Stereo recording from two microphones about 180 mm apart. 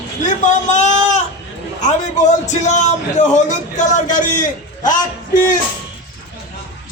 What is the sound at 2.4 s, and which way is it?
Speech, 40° left (ahead or behind).